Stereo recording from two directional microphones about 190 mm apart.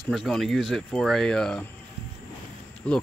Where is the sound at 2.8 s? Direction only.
5° left (ahead or behind).